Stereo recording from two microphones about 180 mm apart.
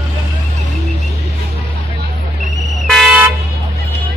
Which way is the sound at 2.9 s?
10° right (ahead or behind).